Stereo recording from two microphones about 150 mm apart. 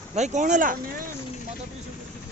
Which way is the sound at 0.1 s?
50° right (ahead or behind).